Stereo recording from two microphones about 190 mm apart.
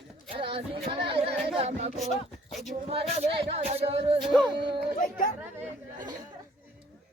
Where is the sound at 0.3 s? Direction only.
30° right (ahead or behind).